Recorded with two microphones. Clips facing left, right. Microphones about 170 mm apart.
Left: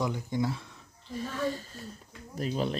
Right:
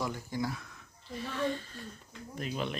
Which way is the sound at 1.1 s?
40° left (ahead or behind).